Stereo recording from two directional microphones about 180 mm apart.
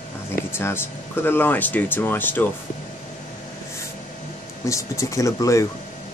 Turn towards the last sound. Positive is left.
turn(degrees=15)  # may be behind; listen again after turning